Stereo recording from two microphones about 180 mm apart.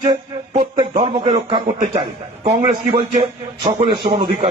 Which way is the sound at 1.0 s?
30° right (ahead or behind).